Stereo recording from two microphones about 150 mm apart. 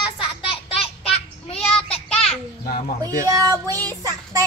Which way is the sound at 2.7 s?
70° left (ahead or behind).